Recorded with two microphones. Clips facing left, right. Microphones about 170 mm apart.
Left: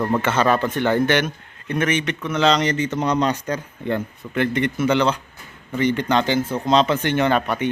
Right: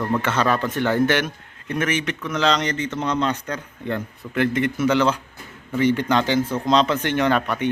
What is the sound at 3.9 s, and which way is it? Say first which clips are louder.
A man's voice: left 2 dB; 5° right (ahead or behind).